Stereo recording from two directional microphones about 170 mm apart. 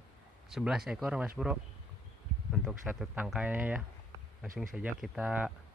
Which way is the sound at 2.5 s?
Centre (ahead or behind).